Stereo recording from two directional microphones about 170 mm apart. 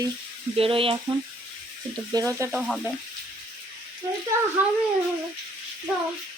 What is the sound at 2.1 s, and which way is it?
Speech, 20° right (ahead or behind).